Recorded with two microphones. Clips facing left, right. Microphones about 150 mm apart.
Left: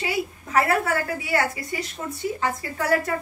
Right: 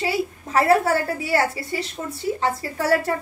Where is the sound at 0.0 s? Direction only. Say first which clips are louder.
Right 3 dB; 30° right (ahead or behind).